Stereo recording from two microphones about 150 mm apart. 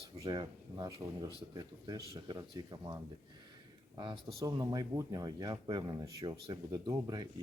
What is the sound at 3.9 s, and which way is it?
Speech, 30° right (ahead or behind).